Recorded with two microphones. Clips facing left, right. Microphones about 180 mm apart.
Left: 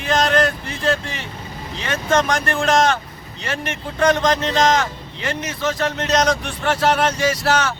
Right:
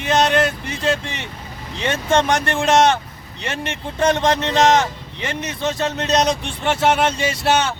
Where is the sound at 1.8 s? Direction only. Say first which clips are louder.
Right 1 dB; 25° right (ahead or behind).